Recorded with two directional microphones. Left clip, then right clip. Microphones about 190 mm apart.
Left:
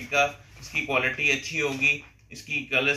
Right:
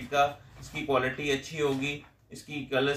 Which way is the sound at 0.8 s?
15° right (ahead or behind).